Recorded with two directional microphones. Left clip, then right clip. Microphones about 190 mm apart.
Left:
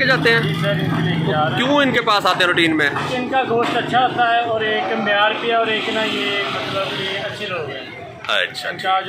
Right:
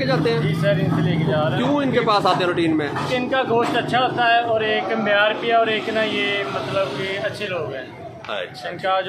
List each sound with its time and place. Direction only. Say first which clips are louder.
0.0 s a man's voice: left 5 dB; 5° right (ahead or behind)
1.6 s a man's voice: left 4 dB; centre (ahead or behind)
3.3 s speech: left 2 dB; 20° right (ahead or behind)
5.0 s speech: left 1 dB; 5° right (ahead or behind)